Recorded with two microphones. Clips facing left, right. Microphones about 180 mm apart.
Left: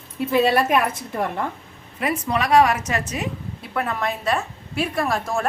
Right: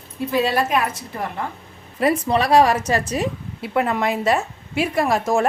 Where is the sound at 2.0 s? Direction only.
35° right (ahead or behind).